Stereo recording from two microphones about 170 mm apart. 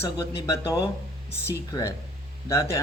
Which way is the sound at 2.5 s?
20° left (ahead or behind).